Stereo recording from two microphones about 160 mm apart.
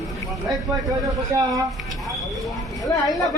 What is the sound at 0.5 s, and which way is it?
Speech, 20° right (ahead or behind).